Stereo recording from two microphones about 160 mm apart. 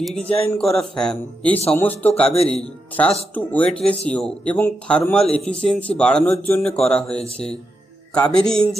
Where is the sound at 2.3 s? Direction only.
40° left (ahead or behind).